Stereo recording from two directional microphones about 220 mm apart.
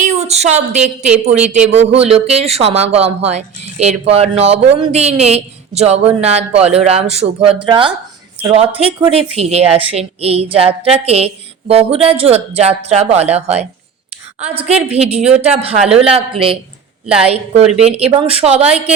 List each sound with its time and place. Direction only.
0.0 s a sound: 30° right (ahead or behind)
1.2 s a man's voice: 30° right (ahead or behind)
14.9 s a man's voice: 30° right (ahead or behind)
17.1 s a woman's voice: 5° right (ahead or behind)
17.7 s a man's voice: 30° right (ahead or behind)